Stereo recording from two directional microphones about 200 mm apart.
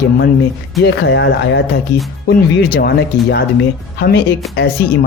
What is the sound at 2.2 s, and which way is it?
Speech, 50° left (ahead or behind).